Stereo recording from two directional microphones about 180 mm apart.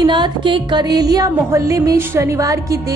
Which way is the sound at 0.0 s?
25° right (ahead or behind).